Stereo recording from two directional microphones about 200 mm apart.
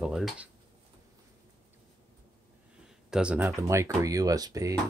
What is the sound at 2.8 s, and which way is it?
Speech, 5° right (ahead or behind).